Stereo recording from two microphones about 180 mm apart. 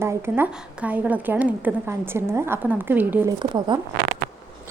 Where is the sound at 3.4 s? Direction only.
25° right (ahead or behind).